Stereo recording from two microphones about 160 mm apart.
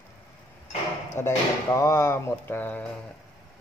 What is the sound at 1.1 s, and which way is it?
A man's voice, 20° left (ahead or behind).